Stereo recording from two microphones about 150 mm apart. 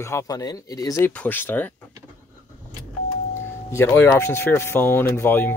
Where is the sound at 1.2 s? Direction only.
10° left (ahead or behind).